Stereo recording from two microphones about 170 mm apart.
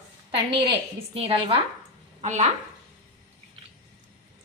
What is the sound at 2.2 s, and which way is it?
Speech, 45° right (ahead or behind).